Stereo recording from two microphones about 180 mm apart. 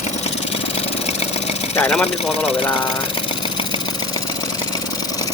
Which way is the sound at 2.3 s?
30° left (ahead or behind).